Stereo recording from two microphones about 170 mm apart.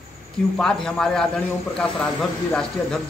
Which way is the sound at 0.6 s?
5° left (ahead or behind).